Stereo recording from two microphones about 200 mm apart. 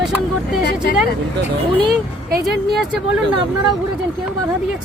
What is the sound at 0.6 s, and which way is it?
Vehicle, 55° left (ahead or behind).